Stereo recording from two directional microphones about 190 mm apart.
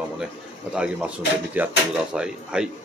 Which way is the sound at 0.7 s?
5° right (ahead or behind).